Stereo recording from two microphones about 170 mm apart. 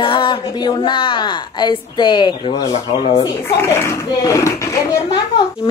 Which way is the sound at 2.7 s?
35° left (ahead or behind).